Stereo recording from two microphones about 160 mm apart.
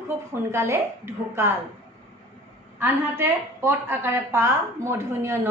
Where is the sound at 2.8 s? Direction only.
10° right (ahead or behind).